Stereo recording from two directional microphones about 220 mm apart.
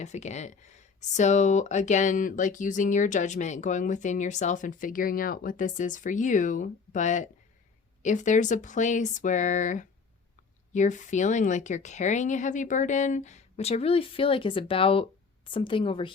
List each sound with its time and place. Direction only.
0.0 s a woman's voice: 30° left (ahead or behind)